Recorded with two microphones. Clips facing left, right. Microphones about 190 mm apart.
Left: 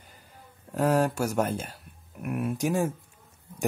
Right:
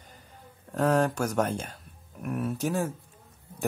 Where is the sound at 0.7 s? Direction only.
10° left (ahead or behind).